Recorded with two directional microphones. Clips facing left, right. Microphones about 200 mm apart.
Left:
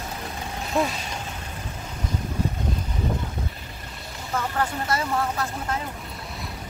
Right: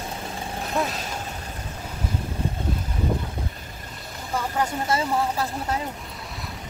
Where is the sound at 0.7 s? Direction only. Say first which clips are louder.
Left 2 dB; centre (ahead or behind).